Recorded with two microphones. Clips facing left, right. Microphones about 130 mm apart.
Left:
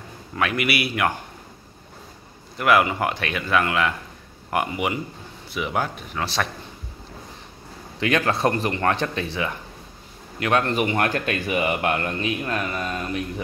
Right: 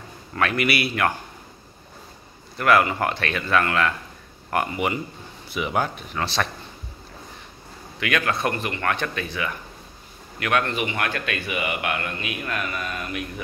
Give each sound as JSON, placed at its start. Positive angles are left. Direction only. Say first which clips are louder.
{"t": 0.4, "sound": "a man's voice", "louder": "right 1 dB", "side_deg": 10}
{"t": 2.5, "sound": "a man's voice", "louder": "even", "side_deg": 15}
{"t": 5.5, "sound": "speech", "louder": "right 1 dB", "side_deg": 0}
{"t": 8.0, "sound": "a man's voice", "louder": "left 3 dB", "side_deg": 30}